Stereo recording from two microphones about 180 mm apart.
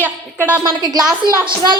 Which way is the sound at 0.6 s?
20° right (ahead or behind).